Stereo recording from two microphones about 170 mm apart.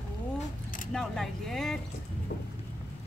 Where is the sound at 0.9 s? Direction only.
Centre (ahead or behind).